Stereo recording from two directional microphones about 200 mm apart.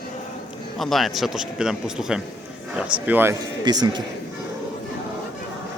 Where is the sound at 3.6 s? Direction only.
20° right (ahead or behind).